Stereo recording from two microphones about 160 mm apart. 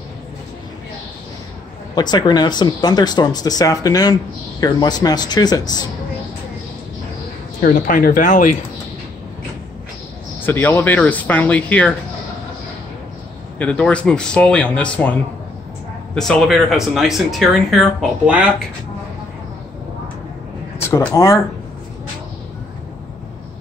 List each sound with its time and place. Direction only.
2.0 s speech: 25° left (ahead or behind)
7.6 s speech: 55° left (ahead or behind)
10.4 s speech: 10° left (ahead or behind)
13.6 s speech: 10° left (ahead or behind)
16.2 s speech: 5° left (ahead or behind)
20.8 s speech: 15° left (ahead or behind)